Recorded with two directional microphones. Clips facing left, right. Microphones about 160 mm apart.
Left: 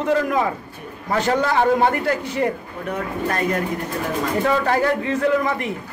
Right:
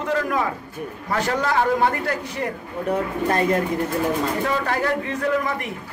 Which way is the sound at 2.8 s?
30° right (ahead or behind).